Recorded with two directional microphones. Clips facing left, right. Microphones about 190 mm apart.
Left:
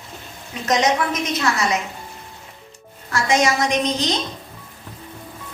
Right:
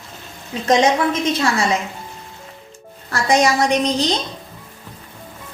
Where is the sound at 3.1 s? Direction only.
35° right (ahead or behind).